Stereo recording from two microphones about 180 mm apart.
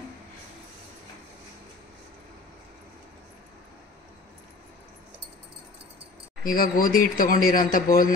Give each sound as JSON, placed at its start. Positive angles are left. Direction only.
{"t": 6.4, "sound": "a man's voice", "side_deg": 50}